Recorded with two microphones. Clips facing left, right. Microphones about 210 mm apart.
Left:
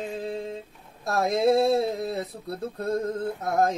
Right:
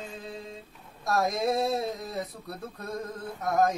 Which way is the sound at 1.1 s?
30° left (ahead or behind).